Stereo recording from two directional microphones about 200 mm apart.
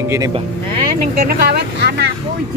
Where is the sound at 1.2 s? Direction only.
50° right (ahead or behind).